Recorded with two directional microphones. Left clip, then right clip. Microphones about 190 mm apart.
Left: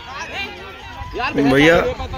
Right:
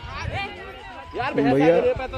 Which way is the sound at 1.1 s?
50° left (ahead or behind).